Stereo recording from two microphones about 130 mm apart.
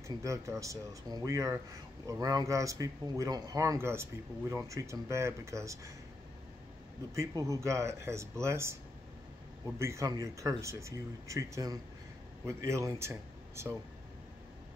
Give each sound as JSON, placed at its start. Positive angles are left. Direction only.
{"t": 0.1, "sound": "speech", "side_deg": -25}
{"t": 7.2, "sound": "speech", "side_deg": -25}
{"t": 9.8, "sound": "speech", "side_deg": -20}